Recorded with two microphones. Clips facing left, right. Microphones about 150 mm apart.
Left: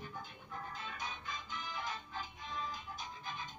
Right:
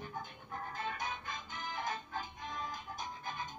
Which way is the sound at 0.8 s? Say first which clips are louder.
Right 5 dB; 50° right (ahead or behind).